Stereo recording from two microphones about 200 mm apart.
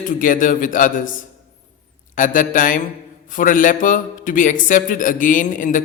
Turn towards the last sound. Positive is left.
turn(degrees=40)  # may be behind; listen again after turning